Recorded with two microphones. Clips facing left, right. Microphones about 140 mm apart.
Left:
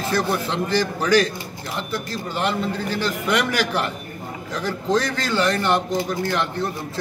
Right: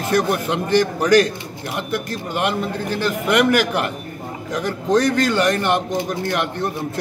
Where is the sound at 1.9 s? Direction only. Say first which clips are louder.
Right 3 dB; 55° right (ahead or behind).